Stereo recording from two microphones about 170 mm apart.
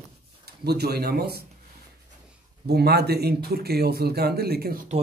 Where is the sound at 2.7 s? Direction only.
70° right (ahead or behind).